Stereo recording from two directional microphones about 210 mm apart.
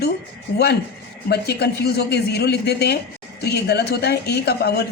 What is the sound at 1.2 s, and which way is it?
Speech, 50° left (ahead or behind).